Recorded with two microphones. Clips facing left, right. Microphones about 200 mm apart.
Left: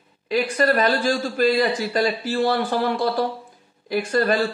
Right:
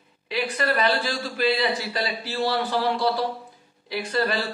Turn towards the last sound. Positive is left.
turn(degrees=45)  # may be behind; listen again after turning